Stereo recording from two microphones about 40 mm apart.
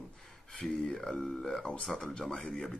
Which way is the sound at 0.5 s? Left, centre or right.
Left.